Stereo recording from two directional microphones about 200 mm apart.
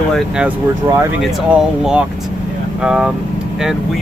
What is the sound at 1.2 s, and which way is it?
Speech, centre (ahead or behind).